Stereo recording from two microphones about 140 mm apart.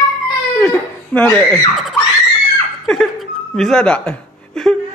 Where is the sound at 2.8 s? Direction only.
Centre (ahead or behind).